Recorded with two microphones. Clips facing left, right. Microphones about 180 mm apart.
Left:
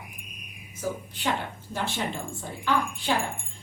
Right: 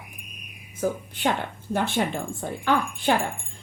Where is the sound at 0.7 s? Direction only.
55° right (ahead or behind).